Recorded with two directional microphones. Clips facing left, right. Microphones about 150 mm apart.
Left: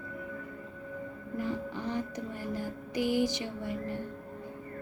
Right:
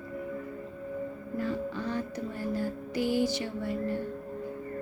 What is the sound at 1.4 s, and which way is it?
Music, 15° left (ahead or behind).